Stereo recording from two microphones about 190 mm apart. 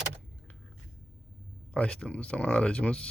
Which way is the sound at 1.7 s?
5° left (ahead or behind).